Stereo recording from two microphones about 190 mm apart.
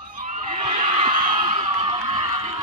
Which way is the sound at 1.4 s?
30° right (ahead or behind).